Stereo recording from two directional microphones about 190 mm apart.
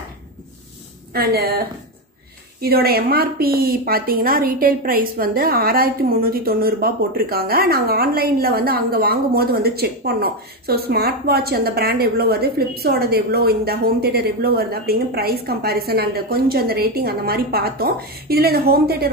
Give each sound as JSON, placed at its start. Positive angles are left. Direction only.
{"t": 1.1, "sound": "a woman's voice", "side_deg": -55}
{"t": 2.6, "sound": "a woman's voice", "side_deg": -55}